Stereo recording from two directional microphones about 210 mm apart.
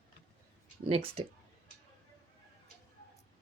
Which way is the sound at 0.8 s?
25° right (ahead or behind).